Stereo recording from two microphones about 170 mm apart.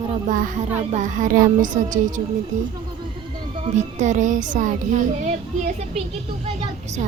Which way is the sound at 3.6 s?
45° right (ahead or behind).